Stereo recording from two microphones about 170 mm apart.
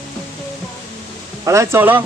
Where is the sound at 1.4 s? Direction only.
20° right (ahead or behind).